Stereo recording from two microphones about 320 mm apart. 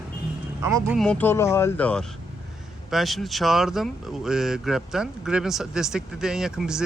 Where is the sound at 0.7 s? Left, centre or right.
Centre.